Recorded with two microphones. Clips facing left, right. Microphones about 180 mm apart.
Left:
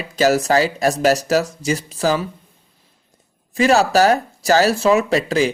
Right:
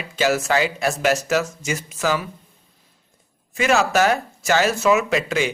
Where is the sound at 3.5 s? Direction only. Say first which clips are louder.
Left 4 dB; 35° left (ahead or behind).